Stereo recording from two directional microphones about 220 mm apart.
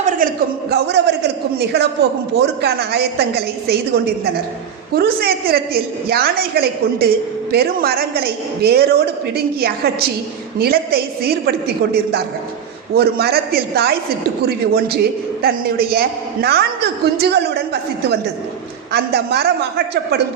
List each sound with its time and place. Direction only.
0.0 s a woman's voice: 40° right (ahead or behind)
18.9 s a woman's voice: 45° right (ahead or behind)